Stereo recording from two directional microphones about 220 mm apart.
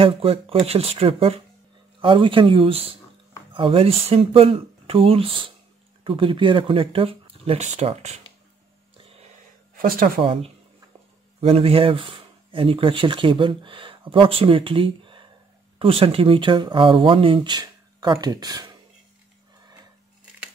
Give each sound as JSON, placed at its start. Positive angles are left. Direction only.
{"t": 0.0, "sound": "speech", "side_deg": -25}
{"t": 9.8, "sound": "speech", "side_deg": -40}
{"t": 10.2, "sound": "speech", "side_deg": -25}